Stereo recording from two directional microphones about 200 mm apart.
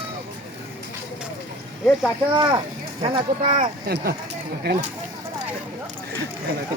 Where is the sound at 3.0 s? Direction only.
30° right (ahead or behind).